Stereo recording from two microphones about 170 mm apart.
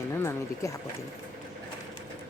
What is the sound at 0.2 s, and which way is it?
Speech, 15° left (ahead or behind).